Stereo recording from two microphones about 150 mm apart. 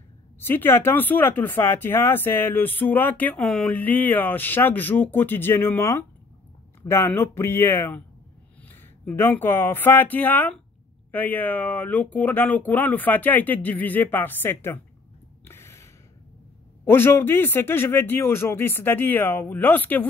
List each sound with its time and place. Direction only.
0.4 s speech: 15° left (ahead or behind)
15.4 s a sound: 15° left (ahead or behind)
16.8 s speech: 15° left (ahead or behind)